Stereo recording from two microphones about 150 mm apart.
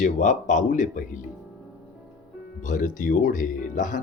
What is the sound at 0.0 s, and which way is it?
Speech, 60° left (ahead or behind).